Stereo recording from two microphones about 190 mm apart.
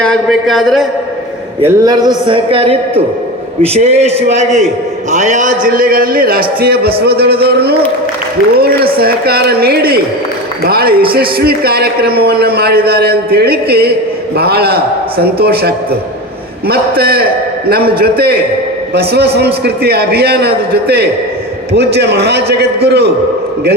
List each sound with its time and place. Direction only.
0.0 s a man's voice: 5° left (ahead or behind)
1.6 s a man's voice: 20° right (ahead or behind); by 23.0 s 60° right (ahead or behind)